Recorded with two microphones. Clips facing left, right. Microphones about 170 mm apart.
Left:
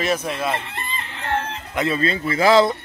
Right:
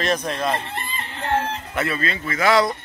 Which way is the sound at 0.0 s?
5° left (ahead or behind).